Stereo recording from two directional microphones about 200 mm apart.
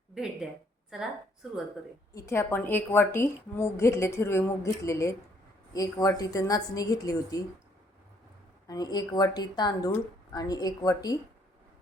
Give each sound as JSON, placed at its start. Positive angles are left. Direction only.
{"t": 2.1, "sound": "a woman's voice", "side_deg": 15}
{"t": 8.6, "sound": "a woman's voice", "side_deg": 20}